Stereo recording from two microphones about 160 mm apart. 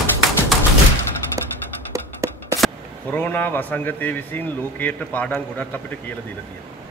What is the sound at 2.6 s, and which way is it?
A man's voice, 10° left (ahead or behind).